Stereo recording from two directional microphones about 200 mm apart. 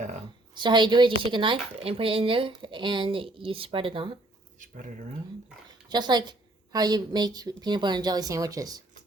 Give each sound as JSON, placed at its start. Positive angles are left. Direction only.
{"t": 0.5, "sound": "speech", "side_deg": -25}
{"t": 5.9, "sound": "speech", "side_deg": -20}